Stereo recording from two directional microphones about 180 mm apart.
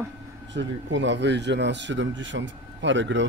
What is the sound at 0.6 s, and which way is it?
Speech, 85° right.